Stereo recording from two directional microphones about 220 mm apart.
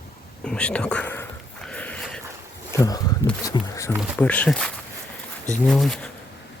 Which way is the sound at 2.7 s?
15° left (ahead or behind).